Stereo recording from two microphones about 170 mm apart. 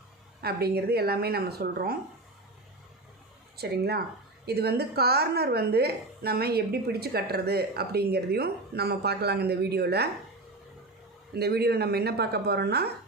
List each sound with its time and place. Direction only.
0.4 s a woman's voice: 65° right (ahead or behind)
3.6 s a woman's voice: 70° right (ahead or behind)
11.3 s a woman's voice: 70° right (ahead or behind)